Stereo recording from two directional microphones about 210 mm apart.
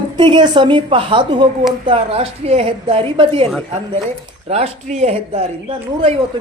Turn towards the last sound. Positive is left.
turn(degrees=-25)  # may be behind; listen again after turning